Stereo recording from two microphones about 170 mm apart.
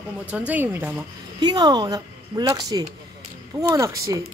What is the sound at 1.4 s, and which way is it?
Speech, 25° right (ahead or behind).